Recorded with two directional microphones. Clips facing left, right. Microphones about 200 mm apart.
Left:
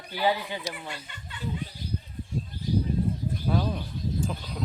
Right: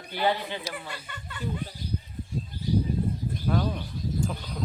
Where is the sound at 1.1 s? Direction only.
50° right (ahead or behind).